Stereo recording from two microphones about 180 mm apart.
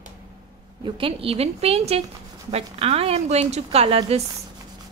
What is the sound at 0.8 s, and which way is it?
A woman's voice, 30° right (ahead or behind).